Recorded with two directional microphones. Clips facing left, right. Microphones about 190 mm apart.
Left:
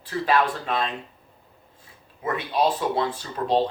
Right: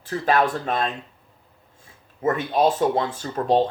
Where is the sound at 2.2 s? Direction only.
45° right (ahead or behind).